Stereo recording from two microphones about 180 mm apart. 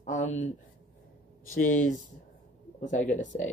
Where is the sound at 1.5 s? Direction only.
45° left (ahead or behind).